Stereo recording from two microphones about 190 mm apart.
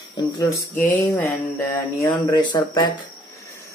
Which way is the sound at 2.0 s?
25° left (ahead or behind).